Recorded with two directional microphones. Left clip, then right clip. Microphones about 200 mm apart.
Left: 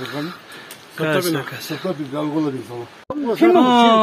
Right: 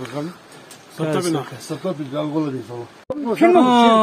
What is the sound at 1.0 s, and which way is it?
Speech, 65° right (ahead or behind).